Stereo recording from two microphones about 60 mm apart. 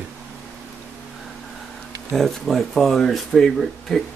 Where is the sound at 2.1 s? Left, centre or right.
Centre.